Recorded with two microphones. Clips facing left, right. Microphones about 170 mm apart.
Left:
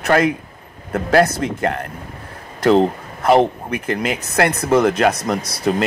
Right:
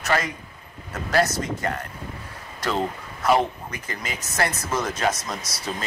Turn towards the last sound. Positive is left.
turn(degrees=60)  # may be behind; listen again after turning